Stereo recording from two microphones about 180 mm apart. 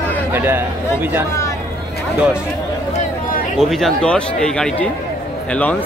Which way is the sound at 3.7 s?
Centre (ahead or behind).